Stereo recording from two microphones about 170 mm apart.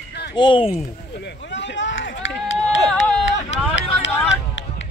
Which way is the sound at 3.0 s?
90° left.